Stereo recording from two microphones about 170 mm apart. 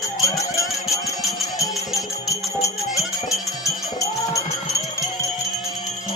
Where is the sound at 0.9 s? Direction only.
20° left (ahead or behind).